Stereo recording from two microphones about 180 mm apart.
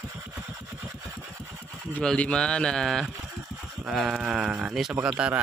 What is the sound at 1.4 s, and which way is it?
Engine, 15° right (ahead or behind).